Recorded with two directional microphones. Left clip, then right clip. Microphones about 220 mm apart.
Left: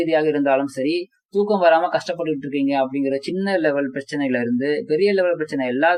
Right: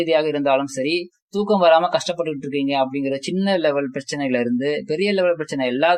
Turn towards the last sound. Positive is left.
turn(degrees=-40)  # may be behind; listen again after turning